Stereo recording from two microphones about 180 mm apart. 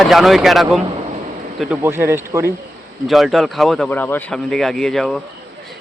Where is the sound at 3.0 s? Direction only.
Centre (ahead or behind).